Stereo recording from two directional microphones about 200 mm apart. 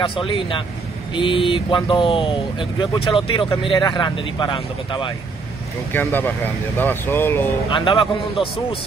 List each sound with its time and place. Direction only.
0.0 s speech: 25° left (ahead or behind)
5.9 s speech: 10° left (ahead or behind)
7.7 s speech: 25° left (ahead or behind)